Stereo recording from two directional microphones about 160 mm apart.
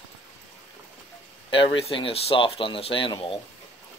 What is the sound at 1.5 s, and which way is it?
Speech, 35° left (ahead or behind).